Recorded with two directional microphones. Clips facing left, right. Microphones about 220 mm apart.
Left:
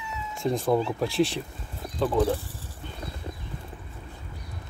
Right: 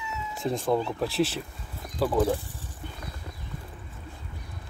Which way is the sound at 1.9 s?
Centre (ahead or behind).